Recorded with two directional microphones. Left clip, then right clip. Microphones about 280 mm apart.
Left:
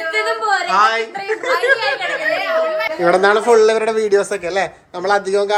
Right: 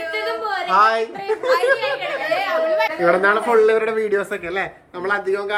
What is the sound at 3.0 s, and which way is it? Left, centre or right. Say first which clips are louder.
A man's voice: left 6 dB; centre.